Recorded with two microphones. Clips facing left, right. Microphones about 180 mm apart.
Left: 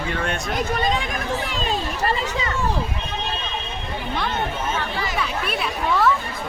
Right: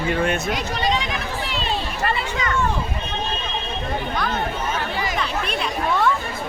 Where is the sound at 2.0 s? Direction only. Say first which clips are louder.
Even; 35° left (ahead or behind).